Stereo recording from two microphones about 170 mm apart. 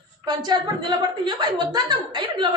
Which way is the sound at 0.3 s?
25° right (ahead or behind).